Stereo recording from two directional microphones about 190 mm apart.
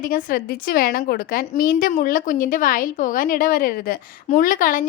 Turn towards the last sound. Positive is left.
turn(degrees=45)  # may be behind; listen again after turning